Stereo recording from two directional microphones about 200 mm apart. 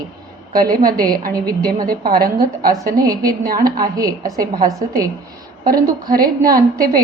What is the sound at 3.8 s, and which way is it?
A woman's voice, 15° right (ahead or behind).